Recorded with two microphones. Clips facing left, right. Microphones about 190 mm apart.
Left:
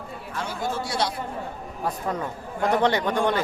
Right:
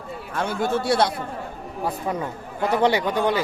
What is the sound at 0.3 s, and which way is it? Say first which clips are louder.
Speech: right 6 dB; 55° right (ahead or behind).